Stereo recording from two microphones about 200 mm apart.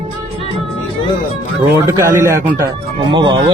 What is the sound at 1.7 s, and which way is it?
Speech, 15° right (ahead or behind).